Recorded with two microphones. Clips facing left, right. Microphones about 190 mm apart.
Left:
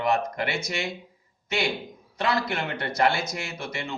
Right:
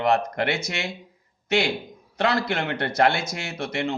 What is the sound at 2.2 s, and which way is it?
A man's voice, 65° right (ahead or behind).